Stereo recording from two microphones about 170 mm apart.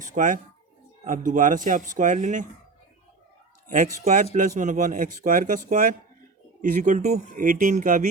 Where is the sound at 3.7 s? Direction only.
50° right (ahead or behind).